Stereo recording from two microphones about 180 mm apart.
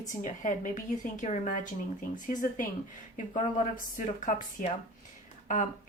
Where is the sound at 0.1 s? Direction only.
45° left (ahead or behind).